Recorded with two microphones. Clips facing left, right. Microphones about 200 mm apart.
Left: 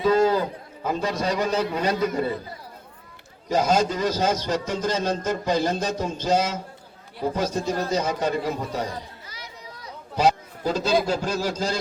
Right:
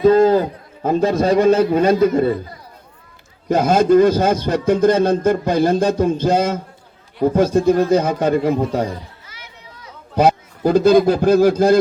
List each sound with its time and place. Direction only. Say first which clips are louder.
0.0 s a man's voice: right 8 dB; 50° right (ahead or behind)
3.5 s a man's voice: right 9 dB; 55° right (ahead or behind)
9.2 s a sound: left 1 dB; 35° left (ahead or behind)
10.2 s a man's voice: right 6 dB; 55° right (ahead or behind)